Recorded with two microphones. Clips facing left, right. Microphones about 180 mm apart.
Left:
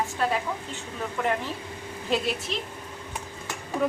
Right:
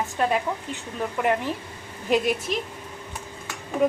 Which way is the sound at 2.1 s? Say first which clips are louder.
Right 5 dB; 15° right (ahead or behind).